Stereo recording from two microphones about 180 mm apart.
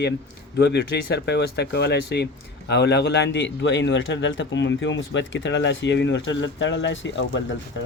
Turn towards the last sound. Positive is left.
turn(degrees=90)